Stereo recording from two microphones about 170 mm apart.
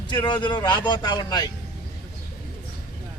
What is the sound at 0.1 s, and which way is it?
Speech, 25° left (ahead or behind).